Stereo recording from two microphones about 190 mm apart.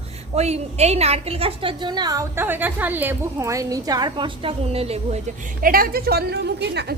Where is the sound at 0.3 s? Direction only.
35° right (ahead or behind).